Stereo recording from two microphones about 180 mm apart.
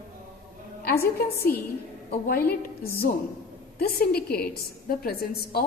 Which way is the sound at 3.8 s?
60° left (ahead or behind).